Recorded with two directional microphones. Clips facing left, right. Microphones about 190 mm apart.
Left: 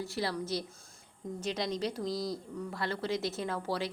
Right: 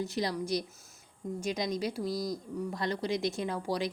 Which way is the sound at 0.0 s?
20° right (ahead or behind).